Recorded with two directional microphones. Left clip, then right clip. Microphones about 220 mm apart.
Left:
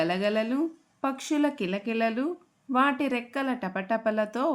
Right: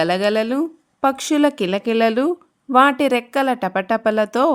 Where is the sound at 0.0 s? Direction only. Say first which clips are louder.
Right 9 dB; 50° right (ahead or behind).